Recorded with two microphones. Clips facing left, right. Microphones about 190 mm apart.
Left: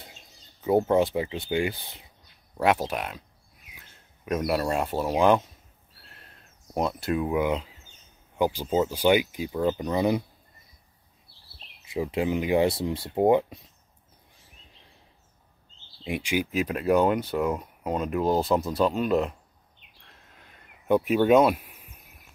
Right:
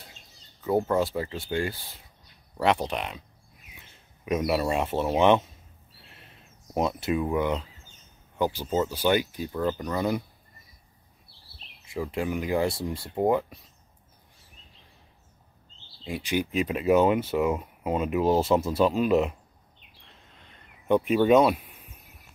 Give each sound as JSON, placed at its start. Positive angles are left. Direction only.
{"t": 0.7, "sound": "speech", "side_deg": 20}
{"t": 2.5, "sound": "speech", "side_deg": 5}
{"t": 6.0, "sound": "a sound", "side_deg": -5}
{"t": 8.4, "sound": "speech", "side_deg": 15}
{"t": 11.8, "sound": "speech", "side_deg": 20}
{"t": 16.0, "sound": "speech", "side_deg": 15}
{"t": 16.5, "sound": "speech", "side_deg": 0}
{"t": 20.1, "sound": "a sound", "side_deg": 5}